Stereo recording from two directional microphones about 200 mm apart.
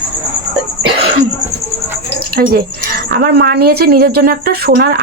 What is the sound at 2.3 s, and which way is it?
A woman's voice, 45° right (ahead or behind).